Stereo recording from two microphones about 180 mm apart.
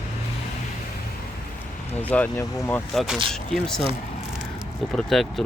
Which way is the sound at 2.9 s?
Centre (ahead or behind).